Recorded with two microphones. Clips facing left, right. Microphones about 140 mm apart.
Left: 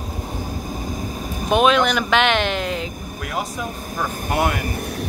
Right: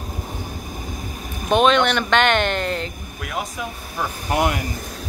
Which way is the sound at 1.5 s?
5° left (ahead or behind).